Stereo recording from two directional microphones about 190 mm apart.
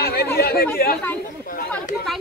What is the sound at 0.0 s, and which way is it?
Chatter, 55° left (ahead or behind).